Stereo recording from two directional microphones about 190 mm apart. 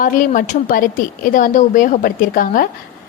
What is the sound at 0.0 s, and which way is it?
A woman's voice, 45° left (ahead or behind).